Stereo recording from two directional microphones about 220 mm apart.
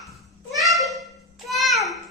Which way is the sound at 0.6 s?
Centre (ahead or behind).